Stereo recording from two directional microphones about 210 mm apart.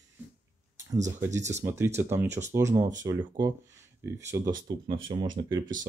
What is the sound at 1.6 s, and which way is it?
Speech, 10° right (ahead or behind).